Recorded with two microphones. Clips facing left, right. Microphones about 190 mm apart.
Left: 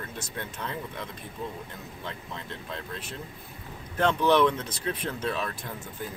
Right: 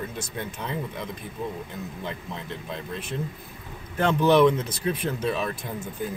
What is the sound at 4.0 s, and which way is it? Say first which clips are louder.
Speech: right 3 dB; 10° right (ahead or behind).